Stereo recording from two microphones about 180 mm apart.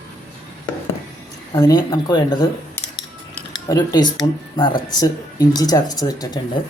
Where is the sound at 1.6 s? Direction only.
20° left (ahead or behind).